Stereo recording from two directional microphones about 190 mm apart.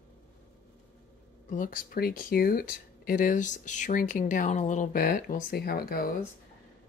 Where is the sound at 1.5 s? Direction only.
45° left (ahead or behind).